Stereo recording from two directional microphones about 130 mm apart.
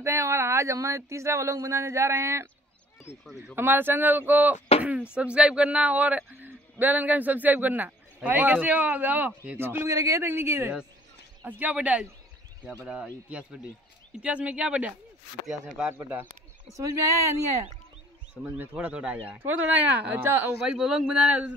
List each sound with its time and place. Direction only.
0.0 s speech: 20° right (ahead or behind)
3.3 s speech: 5° right (ahead or behind)
3.5 s a man's voice: 15° right (ahead or behind)
4.6 s a sound: 50° left (ahead or behind)
5.1 s a man's voice: 10° right (ahead or behind)
15.9 s a man's voice: 15° right (ahead or behind)
18.4 s a man's voice: 10° right (ahead or behind)
20.6 s speech: 5° right (ahead or behind)